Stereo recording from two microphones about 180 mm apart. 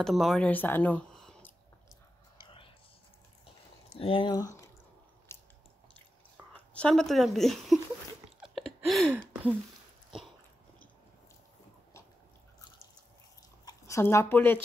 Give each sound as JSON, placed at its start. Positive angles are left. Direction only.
{"t": 0.0, "sound": "speech", "side_deg": 0}
{"t": 2.3, "sound": "whispering", "side_deg": 30}
{"t": 3.9, "sound": "speech", "side_deg": 30}
{"t": 5.3, "sound": "biting", "side_deg": 15}
{"t": 6.3, "sound": "speech", "side_deg": 5}
{"t": 8.4, "sound": "a sound", "side_deg": 0}
{"t": 13.7, "sound": "speech", "side_deg": 15}